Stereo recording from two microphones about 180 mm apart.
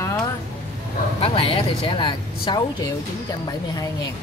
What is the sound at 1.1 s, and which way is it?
Speech, 30° left (ahead or behind).